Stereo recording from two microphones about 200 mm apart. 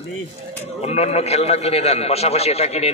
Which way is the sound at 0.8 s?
30° left (ahead or behind).